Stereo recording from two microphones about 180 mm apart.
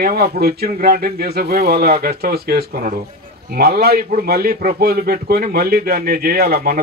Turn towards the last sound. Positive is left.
turn(degrees=-55)  # may be behind; listen again after turning